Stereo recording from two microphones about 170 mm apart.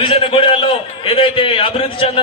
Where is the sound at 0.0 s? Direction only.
30° left (ahead or behind).